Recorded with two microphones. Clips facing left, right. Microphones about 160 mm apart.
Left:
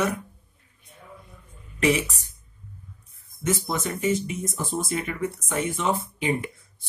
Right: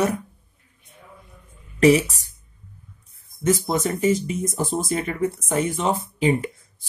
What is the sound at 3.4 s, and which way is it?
Speech, 40° right (ahead or behind).